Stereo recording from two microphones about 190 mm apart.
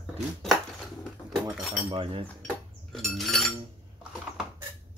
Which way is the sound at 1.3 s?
Centre (ahead or behind).